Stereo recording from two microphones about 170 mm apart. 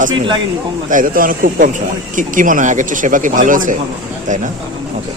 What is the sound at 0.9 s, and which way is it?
Speech, 55° right (ahead or behind).